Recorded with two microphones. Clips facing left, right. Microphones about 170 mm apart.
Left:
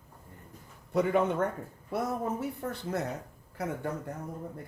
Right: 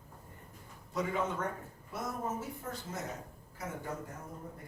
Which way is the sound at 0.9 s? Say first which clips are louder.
Left 8 dB; 60° left (ahead or behind).